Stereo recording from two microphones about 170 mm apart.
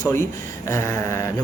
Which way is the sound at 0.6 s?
15° left (ahead or behind).